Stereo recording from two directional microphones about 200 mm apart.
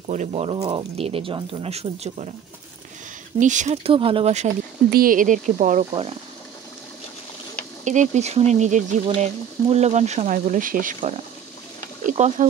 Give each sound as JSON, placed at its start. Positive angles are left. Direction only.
{"t": 0.1, "sound": "speech", "side_deg": -35}
{"t": 3.3, "sound": "speech", "side_deg": -40}
{"t": 4.9, "sound": "speech", "side_deg": -45}
{"t": 7.8, "sound": "speech", "side_deg": -35}